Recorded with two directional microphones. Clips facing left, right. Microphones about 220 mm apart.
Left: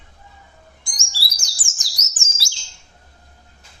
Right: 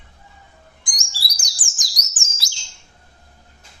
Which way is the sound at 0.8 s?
15° right (ahead or behind).